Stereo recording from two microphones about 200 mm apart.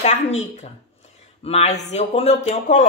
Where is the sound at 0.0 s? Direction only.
35° left (ahead or behind).